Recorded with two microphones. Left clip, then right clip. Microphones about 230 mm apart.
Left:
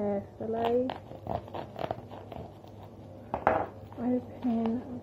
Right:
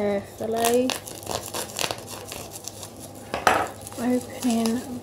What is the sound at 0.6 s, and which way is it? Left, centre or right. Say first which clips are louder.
Speech: right 7 dB; centre.